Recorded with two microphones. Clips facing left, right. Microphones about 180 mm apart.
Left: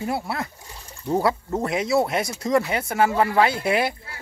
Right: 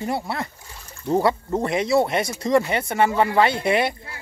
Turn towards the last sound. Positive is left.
turn(degrees=0)  # may be behind; listen again after turning